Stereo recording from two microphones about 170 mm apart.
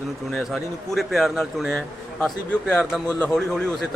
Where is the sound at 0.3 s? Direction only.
Centre (ahead or behind).